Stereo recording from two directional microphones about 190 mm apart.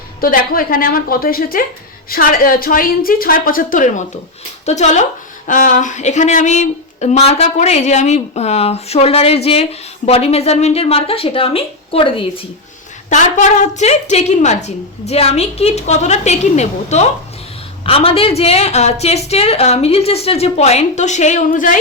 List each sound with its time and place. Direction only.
0.2 s a woman's voice: 50° left (ahead or behind); by 12.5 s 30° left (ahead or behind)
13.1 s speech: 40° left (ahead or behind)